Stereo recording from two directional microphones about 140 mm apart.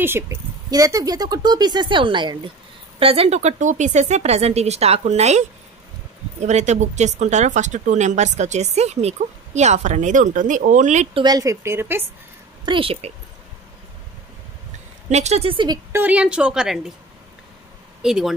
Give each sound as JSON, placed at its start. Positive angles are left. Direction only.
{"t": 0.0, "sound": "a woman's voice", "side_deg": -15}
{"t": 6.4, "sound": "speech", "side_deg": -55}
{"t": 11.1, "sound": "a woman's voice", "side_deg": -30}
{"t": 12.6, "sound": "speech", "side_deg": -40}
{"t": 15.0, "sound": "speech", "side_deg": -55}
{"t": 15.9, "sound": "a woman's voice", "side_deg": -10}
{"t": 18.0, "sound": "speech", "side_deg": -5}